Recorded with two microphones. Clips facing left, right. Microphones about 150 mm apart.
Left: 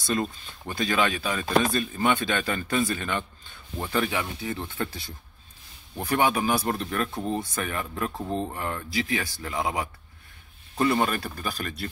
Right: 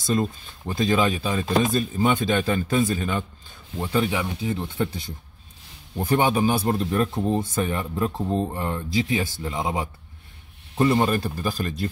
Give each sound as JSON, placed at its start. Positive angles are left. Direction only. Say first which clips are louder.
{"t": 0.0, "sound": "speech", "louder": "right 4 dB", "side_deg": -20}